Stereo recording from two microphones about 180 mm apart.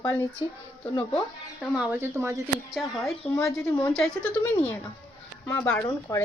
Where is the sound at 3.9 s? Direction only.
5° left (ahead or behind).